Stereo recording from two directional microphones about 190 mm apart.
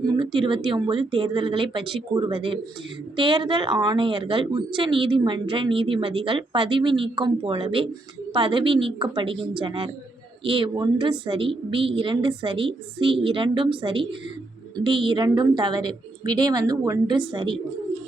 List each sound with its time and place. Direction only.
0.0 s speech: 25° right (ahead or behind)